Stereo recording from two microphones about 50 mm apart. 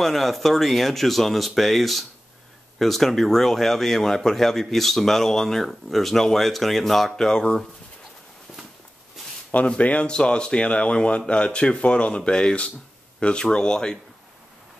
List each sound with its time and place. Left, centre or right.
0.0 s speech: centre
9.7 s a man's voice: left